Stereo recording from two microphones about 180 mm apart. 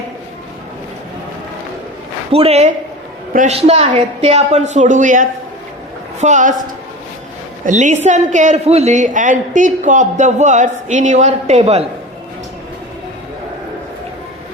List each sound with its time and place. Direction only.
2.3 s a woman's voice: 35° right (ahead or behind)
7.6 s a woman's voice: 40° right (ahead or behind)